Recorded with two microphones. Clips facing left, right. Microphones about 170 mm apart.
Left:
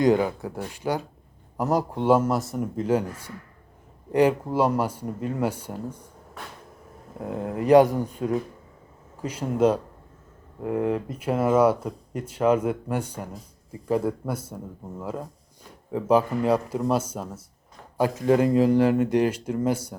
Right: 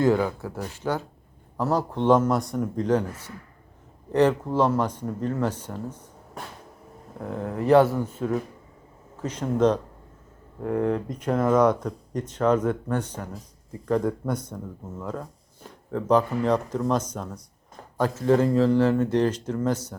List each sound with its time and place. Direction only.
0.0 s speech: 15° left (ahead or behind)
7.3 s speech: 15° left (ahead or behind)